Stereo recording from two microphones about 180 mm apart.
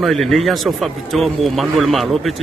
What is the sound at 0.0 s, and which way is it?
Speech, centre (ahead or behind).